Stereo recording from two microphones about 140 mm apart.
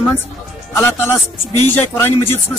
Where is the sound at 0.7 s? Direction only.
15° left (ahead or behind).